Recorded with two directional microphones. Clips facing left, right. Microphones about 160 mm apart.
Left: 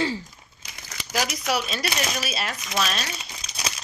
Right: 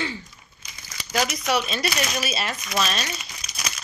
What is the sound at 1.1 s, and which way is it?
Speech, 5° left (ahead or behind).